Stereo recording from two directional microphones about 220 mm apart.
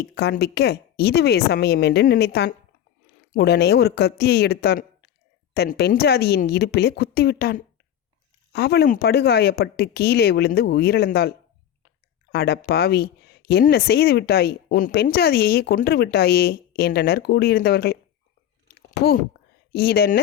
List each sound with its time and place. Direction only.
0.1 s speech: 50° left (ahead or behind)
18.7 s chewing: 45° left (ahead or behind)
19.7 s speech: 45° left (ahead or behind)